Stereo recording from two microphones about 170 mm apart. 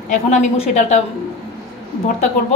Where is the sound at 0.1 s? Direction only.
45° left (ahead or behind).